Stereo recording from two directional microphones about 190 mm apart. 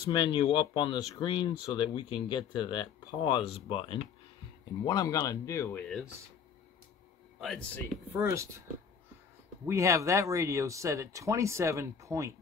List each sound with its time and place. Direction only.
0.0 s speech: 25° left (ahead or behind); by 6.0 s 5° left (ahead or behind)
7.3 s speech: centre (ahead or behind)
8.1 s speech: 15° right (ahead or behind)
9.7 s speech: 15° right (ahead or behind)